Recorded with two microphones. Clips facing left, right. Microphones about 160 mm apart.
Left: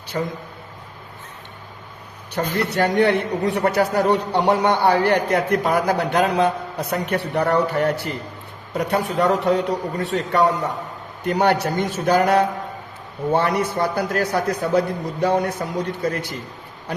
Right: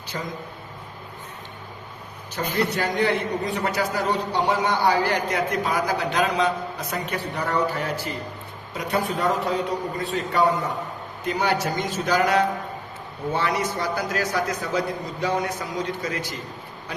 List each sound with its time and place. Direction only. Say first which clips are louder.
0.1 s a man's voice: left 7 dB; 35° left (ahead or behind)
2.3 s a man's voice: left 3 dB; 65° left (ahead or behind)